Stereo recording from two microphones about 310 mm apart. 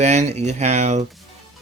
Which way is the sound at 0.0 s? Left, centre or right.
Right.